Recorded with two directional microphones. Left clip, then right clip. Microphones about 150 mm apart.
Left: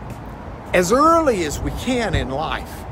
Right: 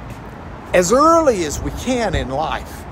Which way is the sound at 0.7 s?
15° left (ahead or behind).